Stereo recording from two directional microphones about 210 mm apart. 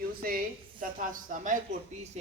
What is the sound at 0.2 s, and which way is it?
A woman's voice, 45° right (ahead or behind).